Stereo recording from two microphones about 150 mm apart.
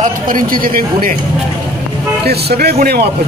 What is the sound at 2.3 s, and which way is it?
Speech, 90° right.